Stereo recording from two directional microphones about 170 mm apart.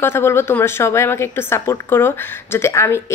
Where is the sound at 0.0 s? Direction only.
15° left (ahead or behind).